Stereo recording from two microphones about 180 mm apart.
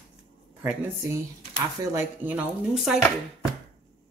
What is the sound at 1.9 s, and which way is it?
Speech, 10° right (ahead or behind).